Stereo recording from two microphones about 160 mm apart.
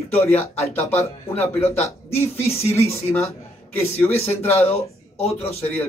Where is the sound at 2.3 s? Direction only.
40° left (ahead or behind).